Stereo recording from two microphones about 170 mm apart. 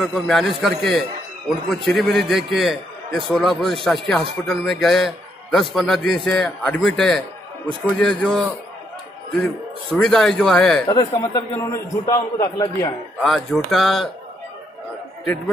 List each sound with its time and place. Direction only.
0.0 s a man's voice: centre (ahead or behind)
10.9 s a man's voice: 20° left (ahead or behind)
13.2 s a man's voice: 5° left (ahead or behind)